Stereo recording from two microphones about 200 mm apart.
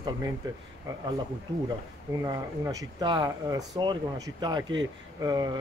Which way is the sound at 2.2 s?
15° right (ahead or behind).